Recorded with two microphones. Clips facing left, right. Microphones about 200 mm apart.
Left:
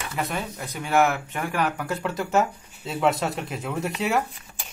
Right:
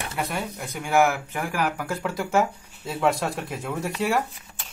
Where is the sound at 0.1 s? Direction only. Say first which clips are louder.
Left 2 dB; 5° right (ahead or behind).